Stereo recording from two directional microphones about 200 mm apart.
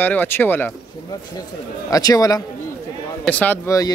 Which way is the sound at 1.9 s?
15° left (ahead or behind).